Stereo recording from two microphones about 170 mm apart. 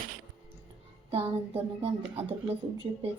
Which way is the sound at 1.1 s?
35° right (ahead or behind).